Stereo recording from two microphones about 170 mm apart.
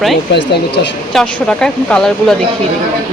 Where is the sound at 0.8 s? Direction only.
85° left.